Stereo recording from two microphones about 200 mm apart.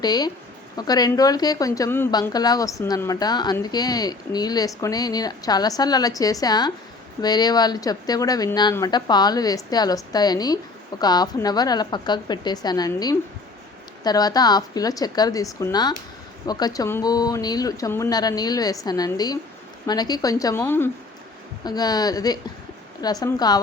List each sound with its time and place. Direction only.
0.0 s a woman's voice: 20° left (ahead or behind)